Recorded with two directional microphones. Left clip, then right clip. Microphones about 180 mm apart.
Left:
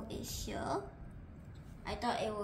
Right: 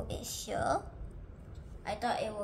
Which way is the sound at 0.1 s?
45° right (ahead or behind).